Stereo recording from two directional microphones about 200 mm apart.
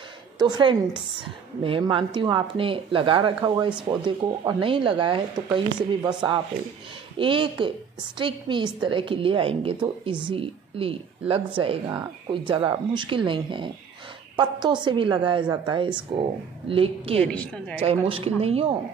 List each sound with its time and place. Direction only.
0.4 s a woman's voice: 20° right (ahead or behind)
7.2 s a woman's voice: 25° right (ahead or behind)
17.3 s a woman's voice: 5° left (ahead or behind)
17.7 s a woman's voice: 30° right (ahead or behind)